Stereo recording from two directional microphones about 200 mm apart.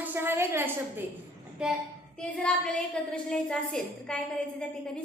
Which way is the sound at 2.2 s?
5° left (ahead or behind).